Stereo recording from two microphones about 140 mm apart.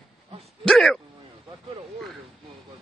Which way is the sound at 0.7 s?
5° left (ahead or behind).